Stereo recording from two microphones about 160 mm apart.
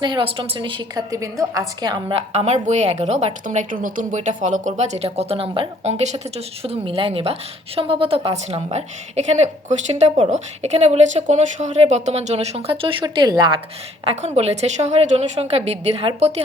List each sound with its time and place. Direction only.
0.0 s a woman's voice: 30° right (ahead or behind)
2.1 s a woman's voice: 40° right (ahead or behind)
14.0 s a woman's voice: 40° right (ahead or behind)